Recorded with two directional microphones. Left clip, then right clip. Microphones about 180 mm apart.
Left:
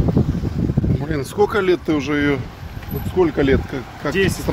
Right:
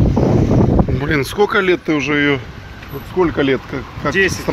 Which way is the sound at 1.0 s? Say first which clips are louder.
Right 1 dB; 5° right (ahead or behind).